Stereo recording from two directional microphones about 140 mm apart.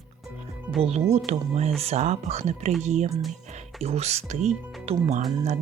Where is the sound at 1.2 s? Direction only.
50° right (ahead or behind).